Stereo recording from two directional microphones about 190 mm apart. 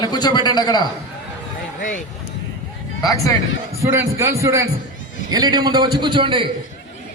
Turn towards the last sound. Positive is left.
turn(degrees=-25)  # may be behind; listen again after turning